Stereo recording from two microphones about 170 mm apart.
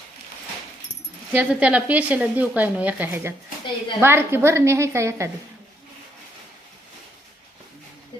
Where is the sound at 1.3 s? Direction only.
5° right (ahead or behind).